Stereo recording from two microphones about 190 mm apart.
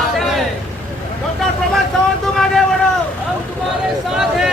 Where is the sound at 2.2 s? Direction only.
Centre (ahead or behind).